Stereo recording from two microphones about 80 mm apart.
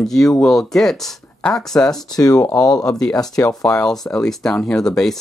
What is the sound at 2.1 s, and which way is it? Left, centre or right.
Speech, left.